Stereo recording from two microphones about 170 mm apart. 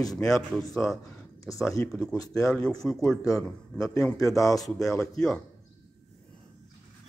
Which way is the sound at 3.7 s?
20° left (ahead or behind).